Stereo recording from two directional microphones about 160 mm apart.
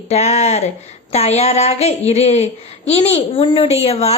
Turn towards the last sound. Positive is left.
turn(degrees=40)  # may be behind; listen again after turning